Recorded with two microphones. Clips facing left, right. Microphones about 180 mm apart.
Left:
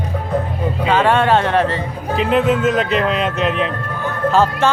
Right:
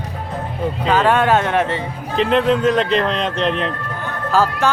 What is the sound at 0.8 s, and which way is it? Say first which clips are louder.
Speech: left 1 dB; centre (ahead or behind).